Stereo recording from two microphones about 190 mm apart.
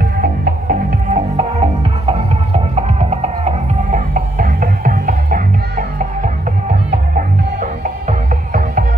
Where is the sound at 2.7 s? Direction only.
35° right (ahead or behind).